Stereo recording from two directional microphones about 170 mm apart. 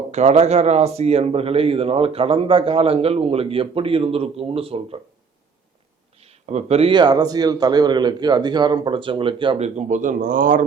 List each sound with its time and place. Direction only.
0.1 s speech: 40° right (ahead or behind)
6.4 s a man's voice: 40° right (ahead or behind)